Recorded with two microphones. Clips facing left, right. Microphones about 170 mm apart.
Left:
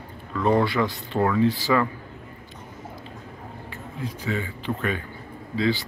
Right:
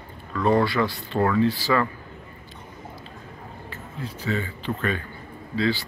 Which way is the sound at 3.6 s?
15° left (ahead or behind).